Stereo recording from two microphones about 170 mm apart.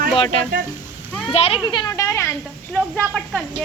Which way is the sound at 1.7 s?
20° left (ahead or behind).